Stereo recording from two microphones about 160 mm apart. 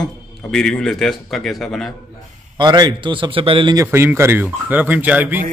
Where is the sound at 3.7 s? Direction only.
15° right (ahead or behind).